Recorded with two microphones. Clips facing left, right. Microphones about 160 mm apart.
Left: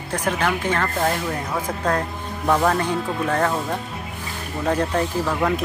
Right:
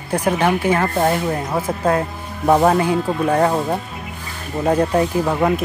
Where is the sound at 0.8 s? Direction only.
20° right (ahead or behind).